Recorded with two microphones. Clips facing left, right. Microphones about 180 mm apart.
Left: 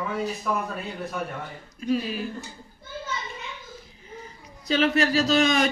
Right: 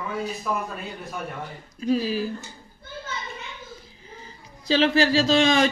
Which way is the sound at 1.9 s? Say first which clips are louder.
Right 2 dB; 35° right (ahead or behind).